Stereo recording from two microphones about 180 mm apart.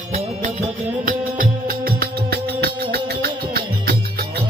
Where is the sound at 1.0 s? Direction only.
50° right (ahead or behind).